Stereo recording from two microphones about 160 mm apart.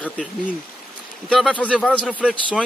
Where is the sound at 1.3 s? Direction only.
5° left (ahead or behind).